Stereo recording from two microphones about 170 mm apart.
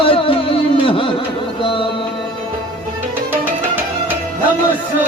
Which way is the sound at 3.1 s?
10° right (ahead or behind).